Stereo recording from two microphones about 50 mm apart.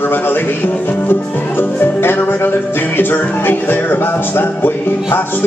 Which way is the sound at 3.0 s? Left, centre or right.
Left.